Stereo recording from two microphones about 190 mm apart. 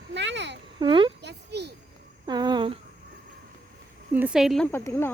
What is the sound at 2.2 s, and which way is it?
Humming, 20° right (ahead or behind).